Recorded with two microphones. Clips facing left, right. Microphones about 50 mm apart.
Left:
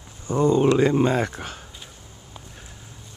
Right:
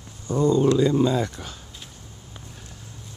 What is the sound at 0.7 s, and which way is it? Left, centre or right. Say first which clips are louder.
Speech: left 1 dB; left.